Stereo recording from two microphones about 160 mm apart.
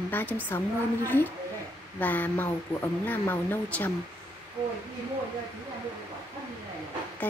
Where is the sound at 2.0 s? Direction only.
10° left (ahead or behind).